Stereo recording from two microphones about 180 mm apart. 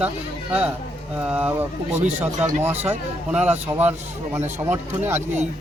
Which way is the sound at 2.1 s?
40° right (ahead or behind).